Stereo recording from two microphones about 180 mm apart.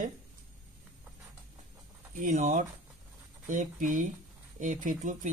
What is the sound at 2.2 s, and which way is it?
Speech, 45° right (ahead or behind).